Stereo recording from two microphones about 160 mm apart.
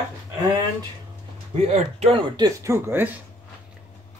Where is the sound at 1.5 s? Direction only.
40° right (ahead or behind).